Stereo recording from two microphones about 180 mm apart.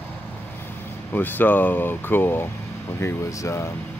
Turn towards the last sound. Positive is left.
turn(degrees=15)  # may be behind; listen again after turning